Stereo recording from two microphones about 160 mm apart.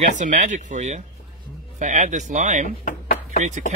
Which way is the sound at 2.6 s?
60° left (ahead or behind).